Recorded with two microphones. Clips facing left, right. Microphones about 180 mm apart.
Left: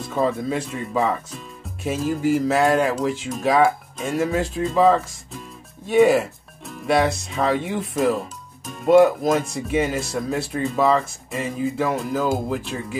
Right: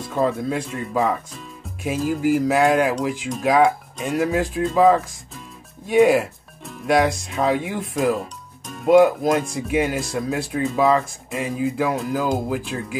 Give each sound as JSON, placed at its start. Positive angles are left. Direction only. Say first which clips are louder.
{"t": 0.1, "sound": "speech", "louder": "right 1 dB", "side_deg": 0}